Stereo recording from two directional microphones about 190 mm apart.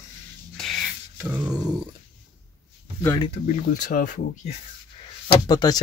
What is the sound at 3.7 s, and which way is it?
Speech, 45° left (ahead or behind).